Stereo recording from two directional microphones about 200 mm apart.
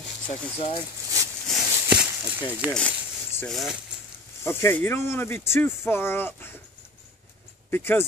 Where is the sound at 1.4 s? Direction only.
5° right (ahead or behind).